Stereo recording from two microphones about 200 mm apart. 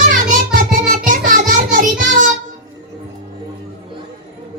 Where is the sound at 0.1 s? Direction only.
40° right (ahead or behind).